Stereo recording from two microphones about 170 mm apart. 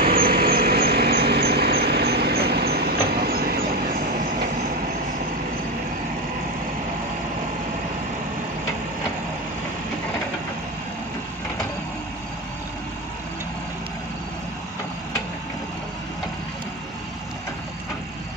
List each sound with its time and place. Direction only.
0.0 s vehicle: 60° right (ahead or behind)